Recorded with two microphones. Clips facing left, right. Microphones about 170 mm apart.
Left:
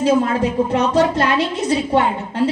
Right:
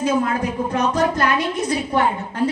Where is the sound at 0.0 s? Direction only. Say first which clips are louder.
Left 4 dB; 30° left (ahead or behind).